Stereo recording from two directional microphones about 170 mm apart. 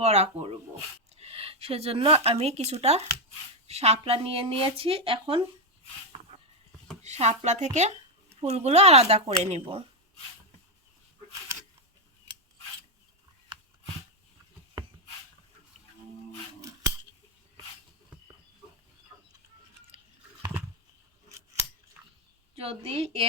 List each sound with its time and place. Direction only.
0.0 s a woman's voice: 40° right (ahead or behind)
7.0 s a woman's voice: 40° right (ahead or behind)
16.6 s scissors: 20° right (ahead or behind)
19.9 s chewing: 35° right (ahead or behind)
21.2 s scissors: 20° right (ahead or behind)
22.0 s chewing: 10° right (ahead or behind)
22.5 s a woman's voice: 35° right (ahead or behind)